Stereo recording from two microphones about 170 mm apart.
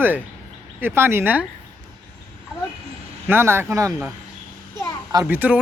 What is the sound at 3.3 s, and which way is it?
Speech, 15° right (ahead or behind).